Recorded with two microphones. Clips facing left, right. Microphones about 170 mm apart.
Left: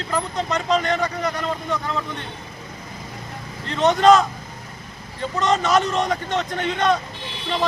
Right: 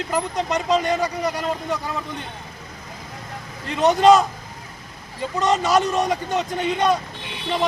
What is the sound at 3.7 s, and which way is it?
Speech, 15° right (ahead or behind).